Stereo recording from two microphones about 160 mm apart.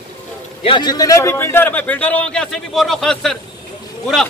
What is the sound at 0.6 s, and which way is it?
A man's voice, 30° left (ahead or behind).